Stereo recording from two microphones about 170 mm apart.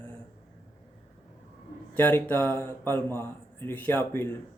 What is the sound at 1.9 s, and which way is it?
A man's voice, 10° left (ahead or behind).